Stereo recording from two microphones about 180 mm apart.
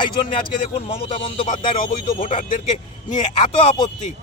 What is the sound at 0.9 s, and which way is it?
Speech, 30° left (ahead or behind).